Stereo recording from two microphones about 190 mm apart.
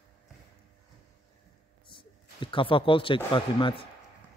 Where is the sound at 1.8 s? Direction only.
25° left (ahead or behind).